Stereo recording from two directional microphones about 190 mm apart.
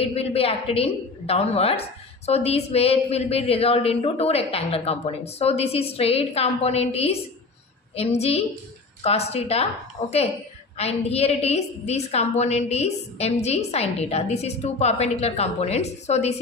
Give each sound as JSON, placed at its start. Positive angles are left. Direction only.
{"t": 0.0, "sound": "a woman's voice", "side_deg": 30}